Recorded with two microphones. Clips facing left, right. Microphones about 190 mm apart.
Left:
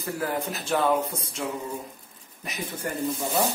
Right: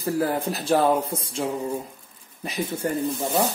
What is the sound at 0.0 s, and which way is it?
Speech, 35° right (ahead or behind).